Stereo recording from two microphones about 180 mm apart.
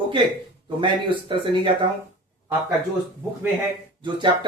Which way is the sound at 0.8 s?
30° right (ahead or behind).